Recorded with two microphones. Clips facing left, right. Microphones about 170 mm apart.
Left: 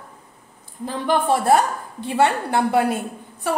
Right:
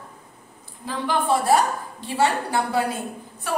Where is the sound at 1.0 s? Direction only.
55° left (ahead or behind).